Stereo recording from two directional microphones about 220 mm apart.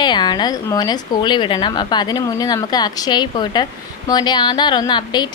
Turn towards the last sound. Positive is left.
turn(degrees=20)  # may be behind; listen again after turning